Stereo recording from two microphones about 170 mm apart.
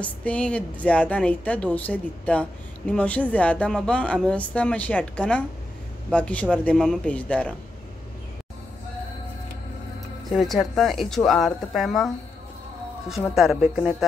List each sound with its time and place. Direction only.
0.0 s speech: 10° left (ahead or behind)
10.3 s speech: centre (ahead or behind)
13.3 s speech: centre (ahead or behind)